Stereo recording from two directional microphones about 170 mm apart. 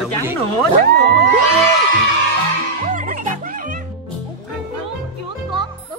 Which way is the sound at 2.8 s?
50° right (ahead or behind).